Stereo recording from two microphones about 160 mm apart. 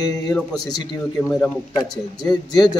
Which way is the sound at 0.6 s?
25° left (ahead or behind).